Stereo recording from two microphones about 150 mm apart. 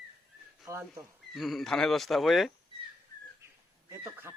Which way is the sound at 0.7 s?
20° right (ahead or behind).